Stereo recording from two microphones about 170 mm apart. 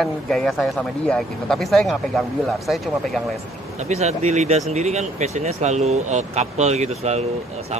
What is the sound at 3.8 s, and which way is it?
Speech, 40° right (ahead or behind).